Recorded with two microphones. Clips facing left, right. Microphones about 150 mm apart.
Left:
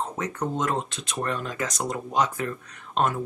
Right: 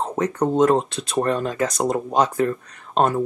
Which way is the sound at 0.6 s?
35° right (ahead or behind).